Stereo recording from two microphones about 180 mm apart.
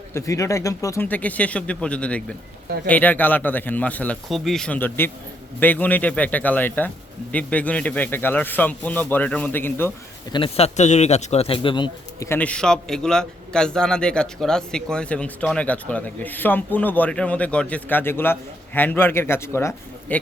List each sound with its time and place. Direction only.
0.1 s a man's voice: 15° left (ahead or behind)
10.3 s a man's voice: 30° left (ahead or behind)
12.3 s a man's voice: 5° left (ahead or behind)